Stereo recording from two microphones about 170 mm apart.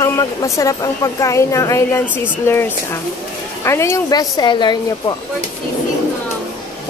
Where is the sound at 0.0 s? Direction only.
20° left (ahead or behind).